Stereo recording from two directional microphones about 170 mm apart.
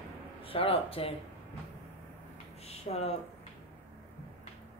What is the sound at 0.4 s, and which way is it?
Speech, 35° left (ahead or behind).